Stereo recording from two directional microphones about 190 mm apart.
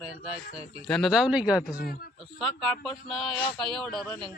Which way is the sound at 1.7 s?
50° left (ahead or behind).